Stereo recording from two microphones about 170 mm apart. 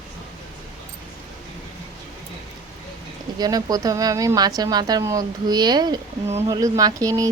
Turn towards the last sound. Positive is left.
turn(degrees=-20)  # may be behind; listen again after turning